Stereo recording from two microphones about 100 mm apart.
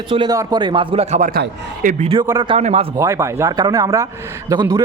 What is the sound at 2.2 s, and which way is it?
Speech, 35° right (ahead or behind).